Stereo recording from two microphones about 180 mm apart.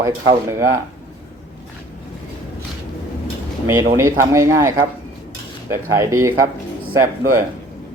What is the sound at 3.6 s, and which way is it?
Speech, 15° right (ahead or behind).